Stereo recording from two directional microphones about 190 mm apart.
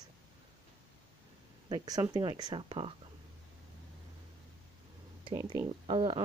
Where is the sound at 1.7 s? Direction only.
20° right (ahead or behind).